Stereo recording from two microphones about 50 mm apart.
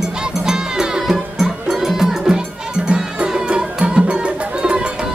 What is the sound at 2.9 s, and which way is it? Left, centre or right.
Music, centre.